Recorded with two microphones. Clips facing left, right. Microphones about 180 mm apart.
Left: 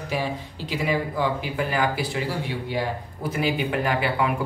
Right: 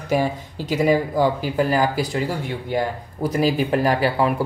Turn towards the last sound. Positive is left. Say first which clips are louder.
# right 5 dB
turn(degrees=-35)  # may be behind; listen again after turning